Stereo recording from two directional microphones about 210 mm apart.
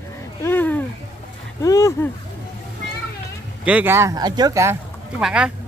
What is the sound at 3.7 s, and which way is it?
Speech, 10° right (ahead or behind).